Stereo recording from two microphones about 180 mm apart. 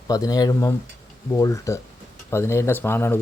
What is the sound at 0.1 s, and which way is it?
Speech, 20° left (ahead or behind).